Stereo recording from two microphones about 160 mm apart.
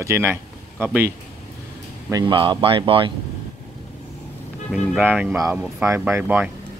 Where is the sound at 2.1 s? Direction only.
25° right (ahead or behind).